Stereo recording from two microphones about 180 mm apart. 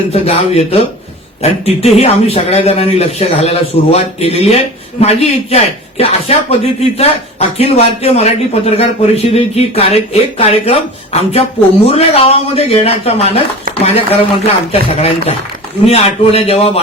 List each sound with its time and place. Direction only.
0.1 s speech: 35° left (ahead or behind)